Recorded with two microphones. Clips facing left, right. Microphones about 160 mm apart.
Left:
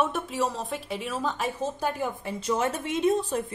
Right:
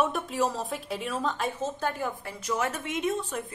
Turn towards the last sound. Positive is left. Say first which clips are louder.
# left 5 dB
turn(degrees=35)  # may be behind; listen again after turning